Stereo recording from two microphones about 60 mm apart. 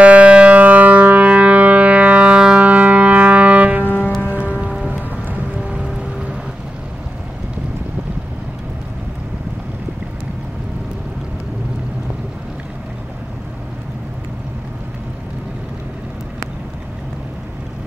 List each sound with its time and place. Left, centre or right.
0.0 s music: right
3.8 s music: left
4.3 s music: right